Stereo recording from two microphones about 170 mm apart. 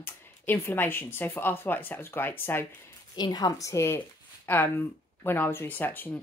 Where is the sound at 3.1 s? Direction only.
25° left (ahead or behind).